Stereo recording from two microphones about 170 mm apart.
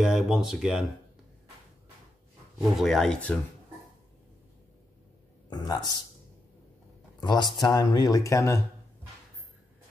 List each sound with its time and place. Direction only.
0.0 s speech: 5° right (ahead or behind)
2.8 s speech: centre (ahead or behind)
5.5 s speech: 25° left (ahead or behind)
7.2 s speech: 25° left (ahead or behind)